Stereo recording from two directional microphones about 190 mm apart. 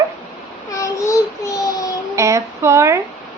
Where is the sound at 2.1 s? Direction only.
15° right (ahead or behind).